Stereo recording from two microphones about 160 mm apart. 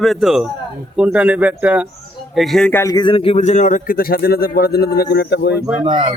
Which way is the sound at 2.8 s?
25° left (ahead or behind).